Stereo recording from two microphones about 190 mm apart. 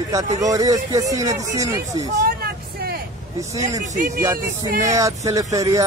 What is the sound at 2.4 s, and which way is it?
Vehicle, 55° right (ahead or behind).